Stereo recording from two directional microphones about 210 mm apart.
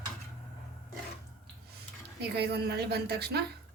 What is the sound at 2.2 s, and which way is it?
A woman's voice, 50° right (ahead or behind).